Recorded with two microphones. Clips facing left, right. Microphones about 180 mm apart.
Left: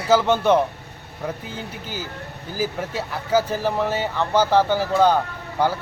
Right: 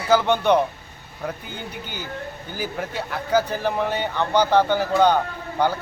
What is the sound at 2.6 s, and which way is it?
Speech, 5° left (ahead or behind).